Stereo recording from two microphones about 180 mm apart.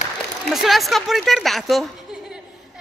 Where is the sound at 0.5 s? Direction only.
Centre (ahead or behind).